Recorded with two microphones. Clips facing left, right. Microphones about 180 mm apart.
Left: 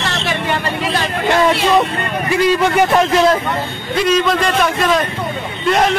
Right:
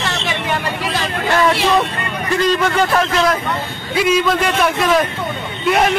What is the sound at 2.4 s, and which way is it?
Speech, 15° left (ahead or behind).